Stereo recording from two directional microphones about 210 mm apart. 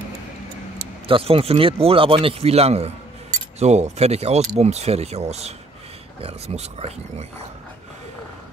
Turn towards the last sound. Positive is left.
turn(degrees=-30)  # may be behind; listen again after turning